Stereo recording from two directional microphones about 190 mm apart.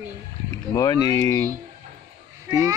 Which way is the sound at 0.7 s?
15° left (ahead or behind).